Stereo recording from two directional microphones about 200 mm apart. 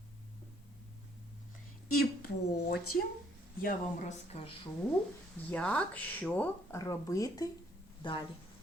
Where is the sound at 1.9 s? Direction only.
50° left (ahead or behind).